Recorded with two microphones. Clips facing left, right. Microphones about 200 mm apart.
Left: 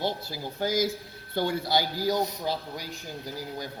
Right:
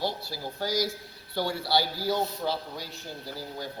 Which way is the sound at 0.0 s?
20° left (ahead or behind).